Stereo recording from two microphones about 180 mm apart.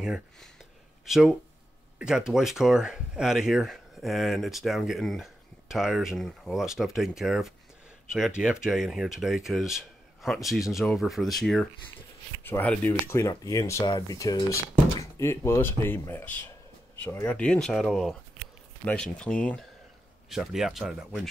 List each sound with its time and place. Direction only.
0.0 s speech: centre (ahead or behind)